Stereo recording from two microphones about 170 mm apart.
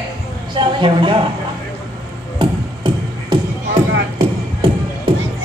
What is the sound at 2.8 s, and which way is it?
Music, 30° right (ahead or behind).